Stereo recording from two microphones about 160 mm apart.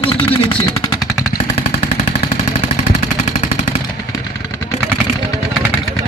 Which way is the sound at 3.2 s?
45° left (ahead or behind).